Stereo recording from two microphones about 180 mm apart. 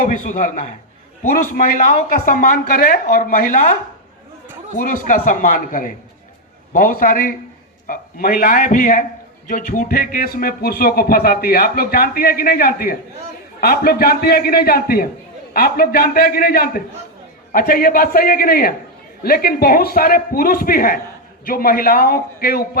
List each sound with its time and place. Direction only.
0.0 s a man's voice: 50° left (ahead or behind)
4.8 s a man's voice: 50° left (ahead or behind)